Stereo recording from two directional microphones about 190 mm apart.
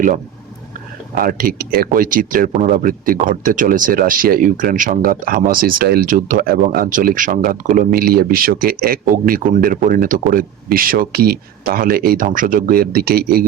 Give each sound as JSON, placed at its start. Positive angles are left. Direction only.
{"t": 1.1, "sound": "speech", "side_deg": -50}